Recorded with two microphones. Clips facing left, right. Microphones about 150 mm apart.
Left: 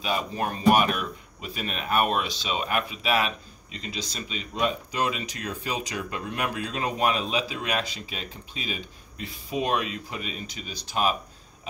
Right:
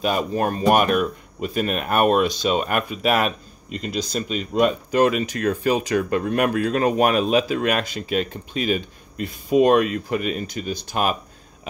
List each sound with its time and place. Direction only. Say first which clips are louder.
0.0 s speech: right 7 dB; 50° right (ahead or behind)